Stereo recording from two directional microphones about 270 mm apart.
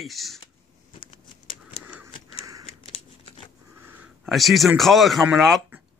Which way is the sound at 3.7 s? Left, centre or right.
Centre.